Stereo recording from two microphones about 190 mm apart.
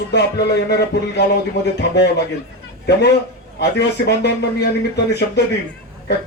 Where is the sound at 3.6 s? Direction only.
60° left (ahead or behind).